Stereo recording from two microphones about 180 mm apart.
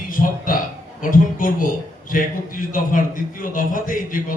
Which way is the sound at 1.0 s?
50° left (ahead or behind).